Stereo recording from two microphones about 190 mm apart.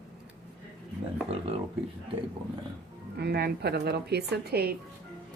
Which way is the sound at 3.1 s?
60° right (ahead or behind).